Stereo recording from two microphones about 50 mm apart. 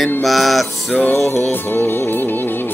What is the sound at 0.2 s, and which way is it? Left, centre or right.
Mantra, centre.